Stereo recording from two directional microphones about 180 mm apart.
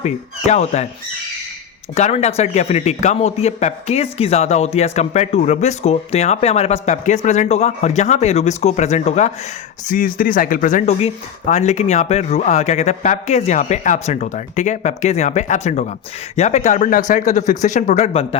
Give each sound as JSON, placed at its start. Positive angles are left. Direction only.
{"t": 0.0, "sound": "a man's voice", "side_deg": 40}
{"t": 2.0, "sound": "a man's voice", "side_deg": 40}
{"t": 9.8, "sound": "a man's voice", "side_deg": 50}